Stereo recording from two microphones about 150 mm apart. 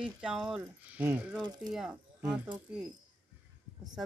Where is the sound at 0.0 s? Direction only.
5° right (ahead or behind).